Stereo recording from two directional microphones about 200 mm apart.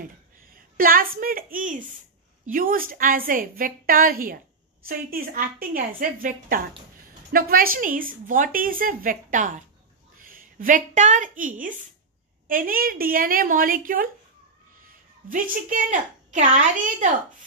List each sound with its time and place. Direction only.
0.6 s a woman's voice: 45° right (ahead or behind)